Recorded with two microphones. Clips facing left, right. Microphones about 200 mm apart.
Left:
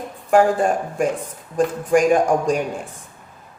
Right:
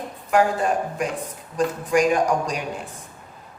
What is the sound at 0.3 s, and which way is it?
Speech, 50° left (ahead or behind).